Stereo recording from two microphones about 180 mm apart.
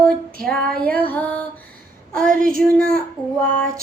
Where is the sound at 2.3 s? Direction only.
50° right (ahead or behind).